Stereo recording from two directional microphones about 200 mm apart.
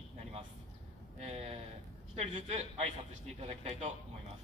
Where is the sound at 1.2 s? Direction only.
30° right (ahead or behind).